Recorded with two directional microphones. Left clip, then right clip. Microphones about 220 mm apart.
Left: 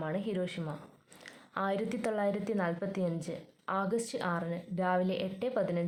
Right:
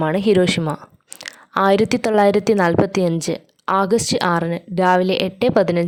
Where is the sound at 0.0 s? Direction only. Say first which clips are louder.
Right 19 dB; 50° right (ahead or behind).